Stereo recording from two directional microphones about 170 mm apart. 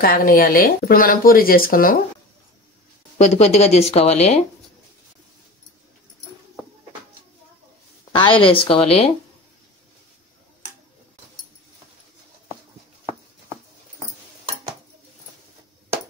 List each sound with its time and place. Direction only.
0.0 s speech: 55° left (ahead or behind)
3.2 s speech: 40° left (ahead or behind)
8.1 s speech: 30° left (ahead or behind)